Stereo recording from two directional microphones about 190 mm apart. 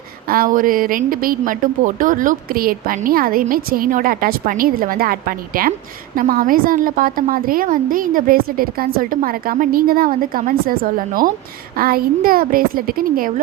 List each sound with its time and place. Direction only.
0.3 s a woman's voice: 50° right (ahead or behind)